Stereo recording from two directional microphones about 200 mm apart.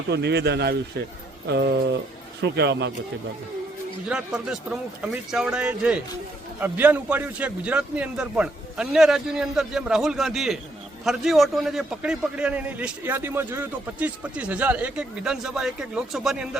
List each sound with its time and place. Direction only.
0.1 s speech: 55° right (ahead or behind)
4.1 s a man's voice: 5° right (ahead or behind)